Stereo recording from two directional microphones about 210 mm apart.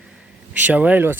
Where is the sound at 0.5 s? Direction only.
5° right (ahead or behind).